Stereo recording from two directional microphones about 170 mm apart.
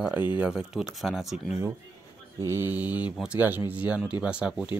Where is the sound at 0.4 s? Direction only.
5° right (ahead or behind).